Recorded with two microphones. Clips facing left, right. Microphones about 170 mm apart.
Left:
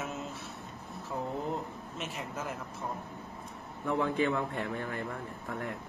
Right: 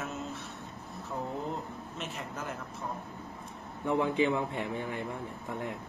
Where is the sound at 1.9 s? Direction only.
Centre (ahead or behind).